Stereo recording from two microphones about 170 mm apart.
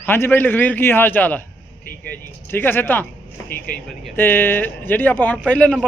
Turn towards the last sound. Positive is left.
turn(degrees=5)  # may be behind; listen again after turning